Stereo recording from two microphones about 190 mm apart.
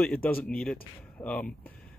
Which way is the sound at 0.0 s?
5° left (ahead or behind).